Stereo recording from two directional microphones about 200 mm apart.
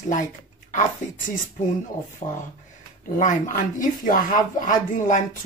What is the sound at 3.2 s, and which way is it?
Speech, 40° left (ahead or behind).